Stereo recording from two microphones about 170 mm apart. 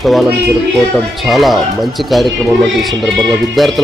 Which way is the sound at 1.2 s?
Centre (ahead or behind).